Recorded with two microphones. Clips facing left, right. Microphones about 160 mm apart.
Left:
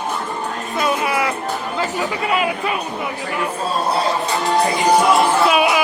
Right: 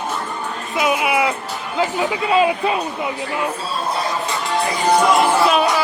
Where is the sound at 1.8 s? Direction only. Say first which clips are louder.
Right 5 dB; 20° right (ahead or behind).